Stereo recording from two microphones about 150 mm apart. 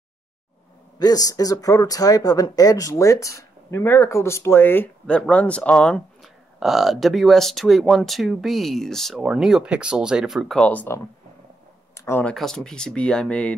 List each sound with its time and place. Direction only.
0.9 s speech: 25° left (ahead or behind)
12.4 s speech: 5° left (ahead or behind)